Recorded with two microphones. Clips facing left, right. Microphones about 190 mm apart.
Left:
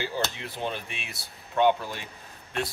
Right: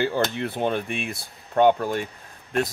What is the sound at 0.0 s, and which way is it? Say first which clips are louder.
Speech: right 8 dB; 55° right (ahead or behind).